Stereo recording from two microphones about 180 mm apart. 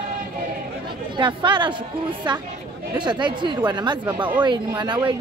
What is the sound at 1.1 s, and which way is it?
Speech, 25° right (ahead or behind).